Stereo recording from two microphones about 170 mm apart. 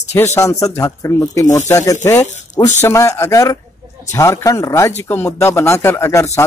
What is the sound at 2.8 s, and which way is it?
Speech, 15° left (ahead or behind).